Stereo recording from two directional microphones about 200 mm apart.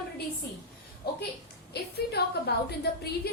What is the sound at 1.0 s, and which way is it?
A woman's voice, 50° left (ahead or behind).